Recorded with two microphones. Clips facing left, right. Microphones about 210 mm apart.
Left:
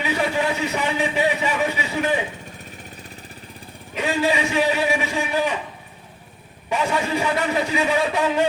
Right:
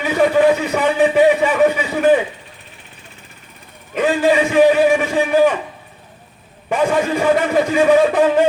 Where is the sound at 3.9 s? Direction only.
50° right (ahead or behind).